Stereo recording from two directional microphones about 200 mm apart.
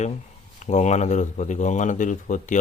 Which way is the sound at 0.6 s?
35° left (ahead or behind).